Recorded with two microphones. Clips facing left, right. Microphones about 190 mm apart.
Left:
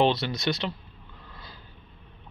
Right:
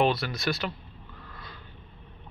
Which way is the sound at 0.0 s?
20° left (ahead or behind).